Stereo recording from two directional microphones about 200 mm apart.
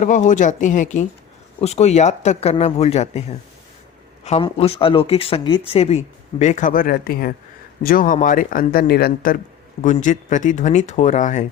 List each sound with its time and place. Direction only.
0.0 s speech: 40° left (ahead or behind)